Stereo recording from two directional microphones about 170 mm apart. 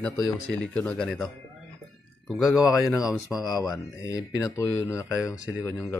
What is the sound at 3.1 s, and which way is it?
Speech, 20° left (ahead or behind).